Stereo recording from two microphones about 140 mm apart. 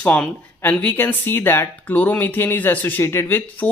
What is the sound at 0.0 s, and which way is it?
Speech, 10° left (ahead or behind).